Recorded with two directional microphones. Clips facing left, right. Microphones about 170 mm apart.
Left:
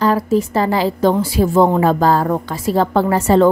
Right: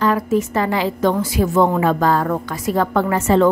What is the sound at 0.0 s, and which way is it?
A woman's voice, 35° left (ahead or behind).